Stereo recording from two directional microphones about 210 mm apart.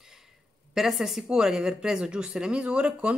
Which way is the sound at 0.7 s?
Centre (ahead or behind).